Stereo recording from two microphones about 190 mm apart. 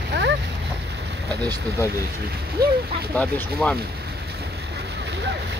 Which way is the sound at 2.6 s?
55° right (ahead or behind).